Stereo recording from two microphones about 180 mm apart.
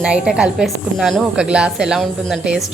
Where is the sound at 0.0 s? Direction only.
5° right (ahead or behind).